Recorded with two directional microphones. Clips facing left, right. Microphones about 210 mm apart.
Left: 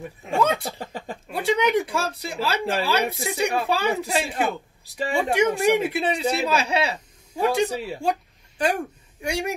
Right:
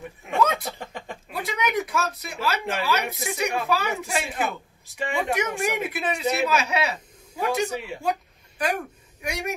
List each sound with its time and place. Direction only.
0.3 s speech: 30° left (ahead or behind)